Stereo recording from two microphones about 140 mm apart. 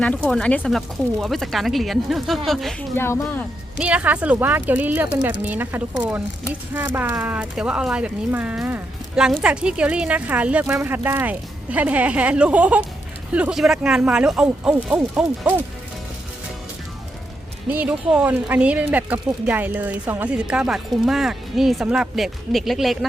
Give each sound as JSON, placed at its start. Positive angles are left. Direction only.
{"t": 0.0, "sound": "speech", "side_deg": 5}
{"t": 2.9, "sound": "speech", "side_deg": 15}
{"t": 3.8, "sound": "speech", "side_deg": -10}
{"t": 17.7, "sound": "speech", "side_deg": -10}